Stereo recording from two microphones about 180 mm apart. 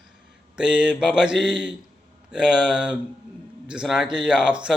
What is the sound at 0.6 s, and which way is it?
A man's voice, 5° right (ahead or behind).